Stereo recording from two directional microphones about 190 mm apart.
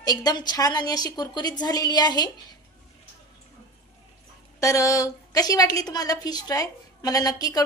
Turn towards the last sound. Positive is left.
turn(degrees=20)  # may be behind; listen again after turning